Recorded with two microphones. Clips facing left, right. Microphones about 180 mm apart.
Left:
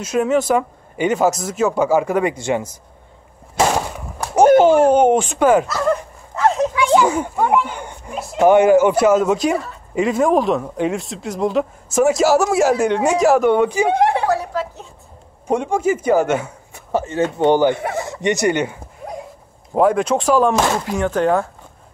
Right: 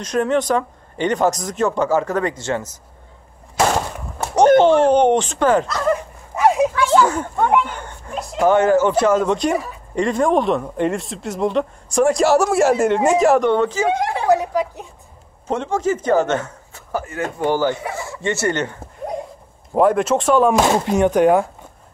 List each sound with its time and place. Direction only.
0.0 s speech: 5° left (ahead or behind)
4.4 s speech: 5° left (ahead or behind)
6.3 s a sound: 10° right (ahead or behind)
6.7 s speech: 15° left (ahead or behind)
13.5 s speech: 10° left (ahead or behind)
14.3 s speech: 15° right (ahead or behind)
15.4 s speech: 10° left (ahead or behind)
16.9 s speech: 25° left (ahead or behind)
19.7 s speech: centre (ahead or behind)
20.6 s speech: 20° right (ahead or behind)